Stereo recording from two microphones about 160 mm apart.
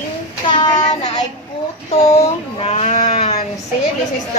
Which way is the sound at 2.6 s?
45° left (ahead or behind).